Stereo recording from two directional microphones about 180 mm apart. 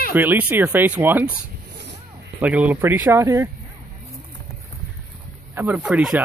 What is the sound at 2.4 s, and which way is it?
Speech, 10° right (ahead or behind).